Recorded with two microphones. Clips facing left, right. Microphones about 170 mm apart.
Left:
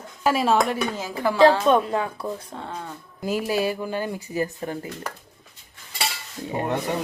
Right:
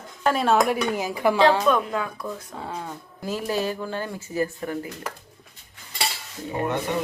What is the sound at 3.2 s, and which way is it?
Speech, 15° left (ahead or behind).